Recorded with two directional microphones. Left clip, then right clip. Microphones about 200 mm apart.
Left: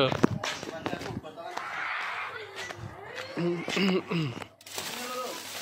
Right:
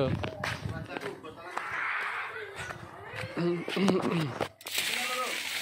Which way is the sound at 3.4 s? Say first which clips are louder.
Even; 10° right (ahead or behind).